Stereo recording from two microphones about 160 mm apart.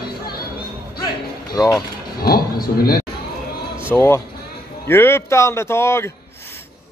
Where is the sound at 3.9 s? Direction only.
15° left (ahead or behind).